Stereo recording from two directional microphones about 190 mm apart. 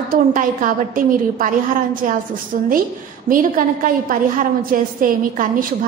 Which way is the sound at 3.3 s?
45° right (ahead or behind).